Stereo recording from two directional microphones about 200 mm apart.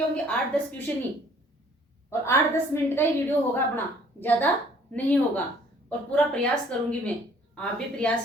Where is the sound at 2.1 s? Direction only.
15° left (ahead or behind).